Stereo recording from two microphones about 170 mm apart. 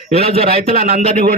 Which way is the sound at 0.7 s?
60° right (ahead or behind).